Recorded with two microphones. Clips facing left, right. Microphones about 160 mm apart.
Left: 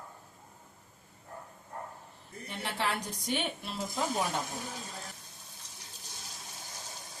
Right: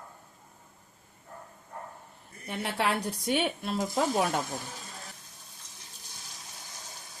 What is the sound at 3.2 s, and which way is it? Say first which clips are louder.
Speech: right 6 dB; 70° right (ahead or behind).